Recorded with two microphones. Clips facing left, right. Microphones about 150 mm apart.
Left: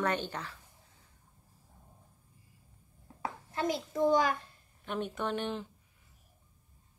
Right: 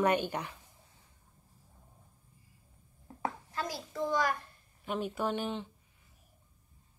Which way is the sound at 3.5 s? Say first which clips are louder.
Left 5 dB; 25° left (ahead or behind).